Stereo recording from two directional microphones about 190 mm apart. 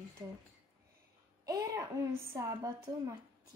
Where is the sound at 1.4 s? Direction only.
20° right (ahead or behind).